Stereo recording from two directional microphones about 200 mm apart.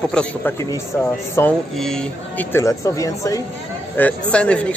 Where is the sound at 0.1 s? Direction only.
10° left (ahead or behind).